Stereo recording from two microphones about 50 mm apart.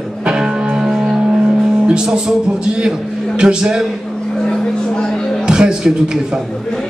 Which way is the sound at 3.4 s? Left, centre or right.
Centre.